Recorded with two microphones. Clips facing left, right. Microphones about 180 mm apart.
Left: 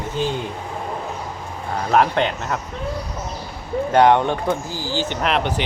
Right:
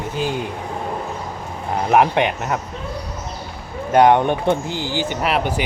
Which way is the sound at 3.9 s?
15° right (ahead or behind).